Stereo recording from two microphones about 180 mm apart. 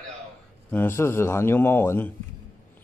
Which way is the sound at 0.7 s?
15° left (ahead or behind).